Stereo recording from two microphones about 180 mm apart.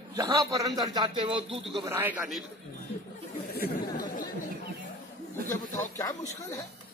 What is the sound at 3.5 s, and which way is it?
Chatter, 55° left (ahead or behind).